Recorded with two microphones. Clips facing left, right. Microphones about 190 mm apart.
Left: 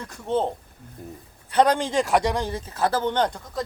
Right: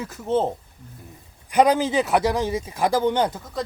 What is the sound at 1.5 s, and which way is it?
Speech, 5° right (ahead or behind).